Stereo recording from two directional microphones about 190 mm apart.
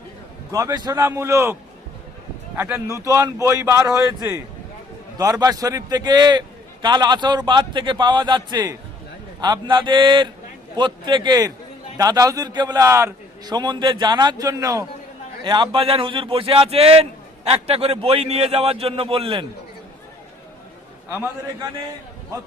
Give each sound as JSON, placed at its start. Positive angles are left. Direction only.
{"t": 0.5, "sound": "a man's voice", "side_deg": -20}
{"t": 2.6, "sound": "a man's voice", "side_deg": -10}